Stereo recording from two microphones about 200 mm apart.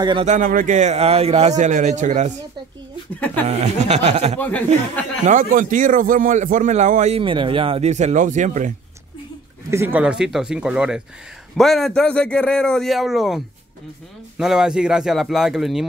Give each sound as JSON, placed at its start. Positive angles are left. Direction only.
{"t": 0.0, "sound": "a man's voice", "side_deg": -25}
{"t": 0.3, "sound": "a man's voice", "side_deg": -40}
{"t": 3.4, "sound": "a man's voice", "side_deg": -30}
{"t": 4.4, "sound": "speech", "side_deg": 5}
{"t": 5.2, "sound": "a man's voice", "side_deg": -40}
{"t": 9.7, "sound": "a man's voice", "side_deg": -10}
{"t": 14.4, "sound": "a man's voice", "side_deg": -5}